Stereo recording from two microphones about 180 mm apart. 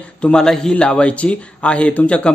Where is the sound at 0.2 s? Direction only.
5° left (ahead or behind).